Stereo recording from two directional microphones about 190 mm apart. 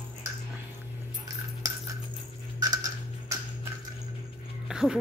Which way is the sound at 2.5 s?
20° right (ahead or behind).